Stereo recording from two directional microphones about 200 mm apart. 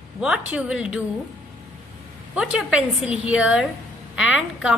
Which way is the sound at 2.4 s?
5° right (ahead or behind).